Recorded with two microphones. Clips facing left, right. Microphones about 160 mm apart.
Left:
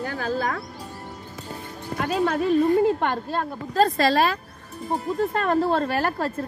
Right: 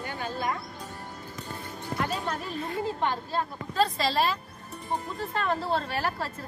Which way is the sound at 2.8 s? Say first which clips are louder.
Left 7 dB; 55° left (ahead or behind).